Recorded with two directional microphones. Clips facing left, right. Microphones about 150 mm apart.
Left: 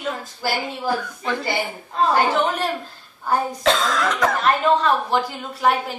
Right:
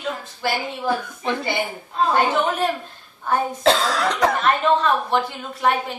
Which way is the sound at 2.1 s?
Centre (ahead or behind).